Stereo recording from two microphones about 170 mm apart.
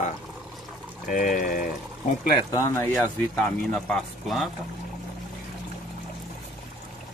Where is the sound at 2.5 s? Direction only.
10° left (ahead or behind).